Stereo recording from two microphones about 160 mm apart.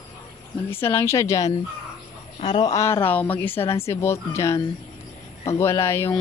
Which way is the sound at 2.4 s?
30° left (ahead or behind).